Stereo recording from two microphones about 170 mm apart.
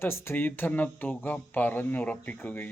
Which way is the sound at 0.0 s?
15° left (ahead or behind).